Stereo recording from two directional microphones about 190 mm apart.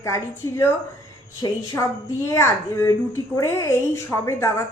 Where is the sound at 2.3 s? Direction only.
15° left (ahead or behind).